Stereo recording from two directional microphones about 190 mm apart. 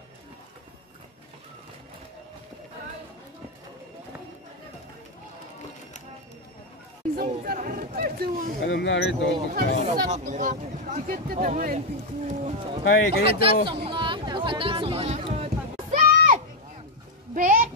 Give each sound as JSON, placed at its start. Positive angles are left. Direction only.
{"t": 7.2, "sound": "a sound", "side_deg": -45}
{"t": 8.6, "sound": "speech", "side_deg": 70}
{"t": 9.5, "sound": "speech", "side_deg": -50}
{"t": 12.3, "sound": "speech", "side_deg": -30}
{"t": 13.7, "sound": "music", "side_deg": -25}
{"t": 17.3, "sound": "a sound", "side_deg": -45}